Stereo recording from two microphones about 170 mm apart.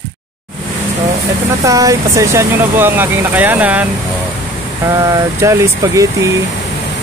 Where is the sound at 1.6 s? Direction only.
20° right (ahead or behind).